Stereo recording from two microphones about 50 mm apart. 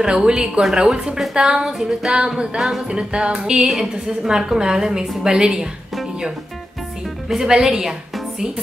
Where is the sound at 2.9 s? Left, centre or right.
Centre.